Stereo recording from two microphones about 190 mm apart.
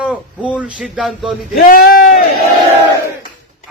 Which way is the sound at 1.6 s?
50° left (ahead or behind).